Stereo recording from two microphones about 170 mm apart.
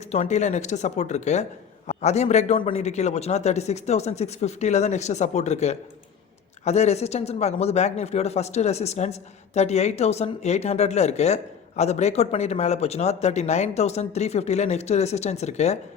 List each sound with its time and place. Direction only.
0.1 s speech: 40° left (ahead or behind)